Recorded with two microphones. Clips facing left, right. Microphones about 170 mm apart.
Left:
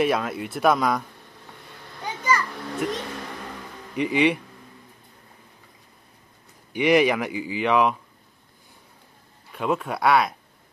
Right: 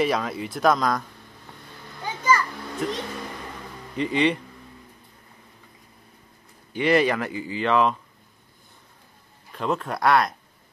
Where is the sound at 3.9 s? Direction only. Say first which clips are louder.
Left 1 dB; 10° left (ahead or behind).